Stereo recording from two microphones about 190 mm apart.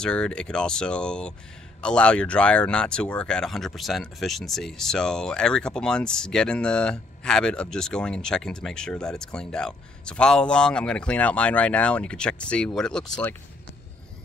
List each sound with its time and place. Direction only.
0.0 s speech: 5° left (ahead or behind)